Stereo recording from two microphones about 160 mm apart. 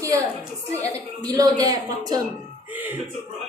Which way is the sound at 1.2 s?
25° right (ahead or behind).